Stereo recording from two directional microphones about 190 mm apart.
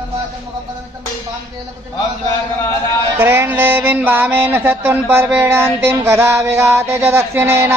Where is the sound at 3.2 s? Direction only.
10° right (ahead or behind).